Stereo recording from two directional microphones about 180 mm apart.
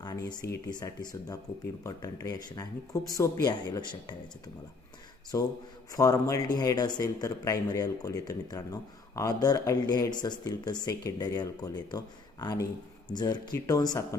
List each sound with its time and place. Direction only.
0.0 s speech: 20° left (ahead or behind)
5.3 s a man's voice: 15° left (ahead or behind)